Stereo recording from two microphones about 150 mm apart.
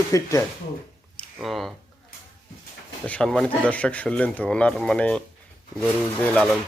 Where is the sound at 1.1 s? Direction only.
5° left (ahead or behind).